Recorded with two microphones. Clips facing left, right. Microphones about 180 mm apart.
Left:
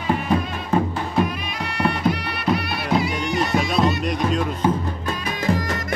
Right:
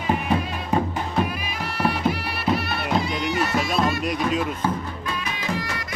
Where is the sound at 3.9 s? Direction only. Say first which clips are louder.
Left 1 dB; 5° right (ahead or behind).